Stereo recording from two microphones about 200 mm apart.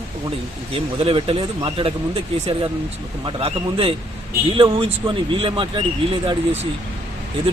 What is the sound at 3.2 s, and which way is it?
Speech, 25° right (ahead or behind).